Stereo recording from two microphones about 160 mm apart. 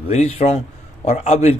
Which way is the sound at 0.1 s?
45° left (ahead or behind).